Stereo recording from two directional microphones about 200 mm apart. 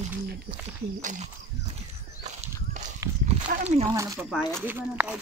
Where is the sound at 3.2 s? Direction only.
35° right (ahead or behind).